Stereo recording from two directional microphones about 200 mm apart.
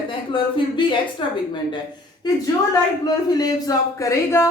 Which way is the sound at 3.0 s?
20° left (ahead or behind).